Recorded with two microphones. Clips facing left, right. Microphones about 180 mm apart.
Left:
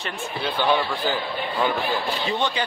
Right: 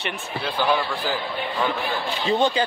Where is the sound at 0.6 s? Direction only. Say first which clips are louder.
Left 1 dB; 10° right (ahead or behind).